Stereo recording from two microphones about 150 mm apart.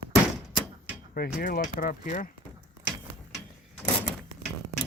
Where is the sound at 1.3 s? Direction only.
75° left (ahead or behind); by 2.3 s 60° left (ahead or behind).